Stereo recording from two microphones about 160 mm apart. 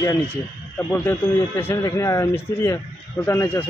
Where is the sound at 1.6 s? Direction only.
20° left (ahead or behind).